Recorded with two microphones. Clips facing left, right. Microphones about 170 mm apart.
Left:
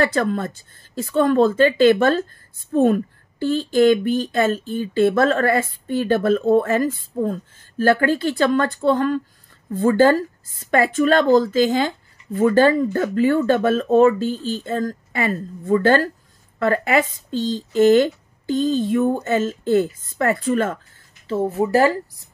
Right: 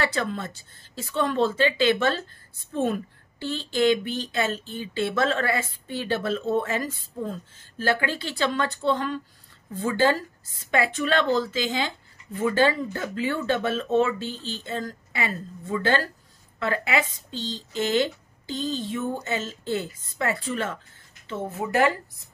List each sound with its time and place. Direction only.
0.0 s a woman's voice: 50° left (ahead or behind)
21.3 s speech: 35° left (ahead or behind)